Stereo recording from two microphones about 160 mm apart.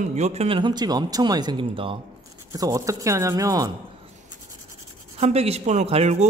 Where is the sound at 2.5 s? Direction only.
20° right (ahead or behind).